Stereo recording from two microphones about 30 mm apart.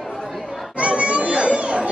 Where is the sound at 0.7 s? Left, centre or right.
Right.